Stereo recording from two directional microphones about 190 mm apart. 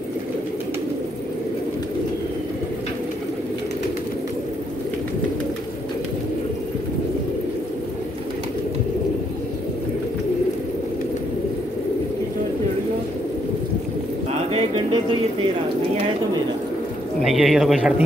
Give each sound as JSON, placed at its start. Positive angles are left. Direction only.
{"t": 14.5, "sound": "bird", "side_deg": -30}
{"t": 17.2, "sound": "a man's voice", "side_deg": 0}